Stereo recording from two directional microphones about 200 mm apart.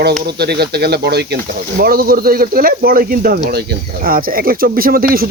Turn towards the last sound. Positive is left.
turn(degrees=-50)  # may be behind; listen again after turning